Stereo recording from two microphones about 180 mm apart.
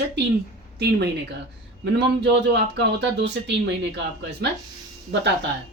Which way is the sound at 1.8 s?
70° right (ahead or behind).